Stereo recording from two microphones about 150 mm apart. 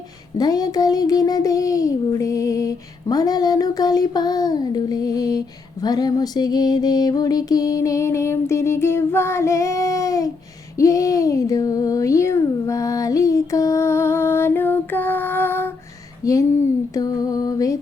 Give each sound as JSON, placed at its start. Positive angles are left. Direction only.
{"t": 0.3, "sound": "a child's voice", "side_deg": 25}